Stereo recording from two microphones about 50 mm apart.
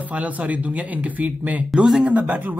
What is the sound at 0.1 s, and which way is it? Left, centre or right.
Speech, right.